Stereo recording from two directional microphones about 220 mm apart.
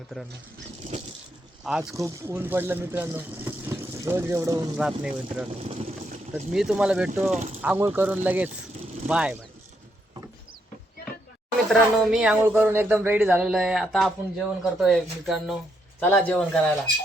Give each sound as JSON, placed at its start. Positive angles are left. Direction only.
{"t": 0.8, "sound": "crushing", "side_deg": -35}
{"t": 1.6, "sound": "speech", "side_deg": 0}
{"t": 5.5, "sound": "vehicle", "side_deg": -25}
{"t": 6.3, "sound": "speech", "side_deg": 0}
{"t": 11.7, "sound": "speech", "side_deg": 0}